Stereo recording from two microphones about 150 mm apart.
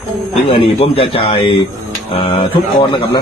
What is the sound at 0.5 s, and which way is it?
A man's voice, 40° left (ahead or behind).